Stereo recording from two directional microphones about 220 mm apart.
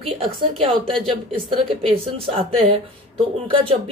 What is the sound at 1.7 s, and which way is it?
A woman's voice, 25° right (ahead or behind).